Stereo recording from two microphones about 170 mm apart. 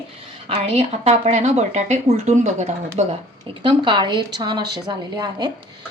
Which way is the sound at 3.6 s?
30° right (ahead or behind).